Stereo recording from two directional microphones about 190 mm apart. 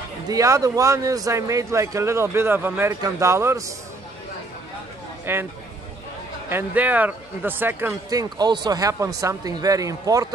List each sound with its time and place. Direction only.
0.3 s a man's voice: 15° right (ahead or behind)
5.2 s speech: 10° right (ahead or behind)
6.5 s a man's voice: 10° right (ahead or behind)